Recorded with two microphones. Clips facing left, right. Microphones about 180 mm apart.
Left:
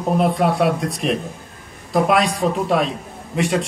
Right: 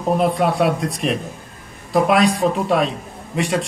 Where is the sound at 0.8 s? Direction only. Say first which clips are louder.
Even; centre (ahead or behind).